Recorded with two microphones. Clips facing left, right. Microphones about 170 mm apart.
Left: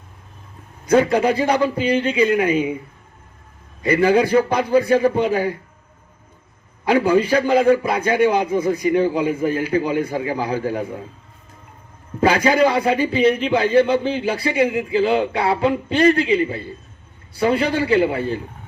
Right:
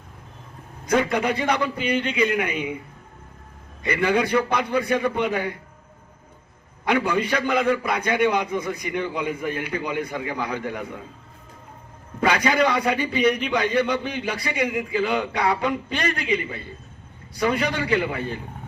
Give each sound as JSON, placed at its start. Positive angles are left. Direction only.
{"t": 0.9, "sound": "speech", "side_deg": 30}
{"t": 4.0, "sound": "speech", "side_deg": 30}
{"t": 7.1, "sound": "speech", "side_deg": 30}
{"t": 12.2, "sound": "speech", "side_deg": 30}